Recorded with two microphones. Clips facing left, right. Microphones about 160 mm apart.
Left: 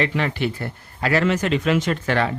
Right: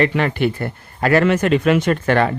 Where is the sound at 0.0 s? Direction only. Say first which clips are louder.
Right 5 dB; 55° right (ahead or behind).